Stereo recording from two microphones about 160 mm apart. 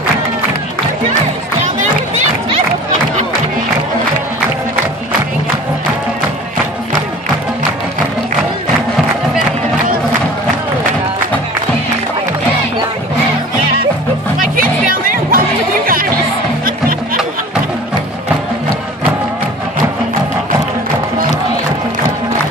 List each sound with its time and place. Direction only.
14.4 s music: 60° right (ahead or behind)